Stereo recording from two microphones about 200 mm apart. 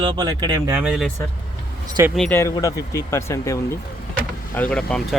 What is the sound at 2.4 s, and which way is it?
Speech, 15° left (ahead or behind).